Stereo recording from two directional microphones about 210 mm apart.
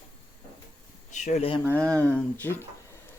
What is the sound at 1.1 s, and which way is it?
Speech, 35° left (ahead or behind).